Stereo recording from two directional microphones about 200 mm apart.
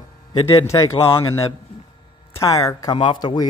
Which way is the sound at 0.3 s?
15° left (ahead or behind).